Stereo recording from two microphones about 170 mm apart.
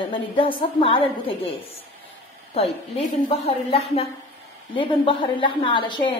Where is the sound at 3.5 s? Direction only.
35° left (ahead or behind).